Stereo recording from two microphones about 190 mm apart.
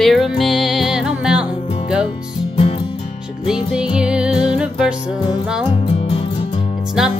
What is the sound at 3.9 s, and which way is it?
Music, 5° right (ahead or behind).